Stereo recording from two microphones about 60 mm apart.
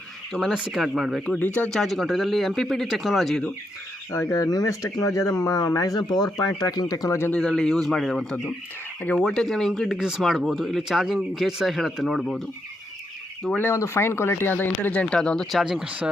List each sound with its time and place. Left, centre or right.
0.3 s a man's voice: centre
0.7 s speech: centre
1.4 s speech: left
1.7 s a man's voice: centre
2.8 s speech: centre
4.3 s speech: left
7.3 s a man's voice: centre
10.0 s speech: centre
13.7 s speech: left
15.1 s a man's voice: centre
15.6 s speech: centre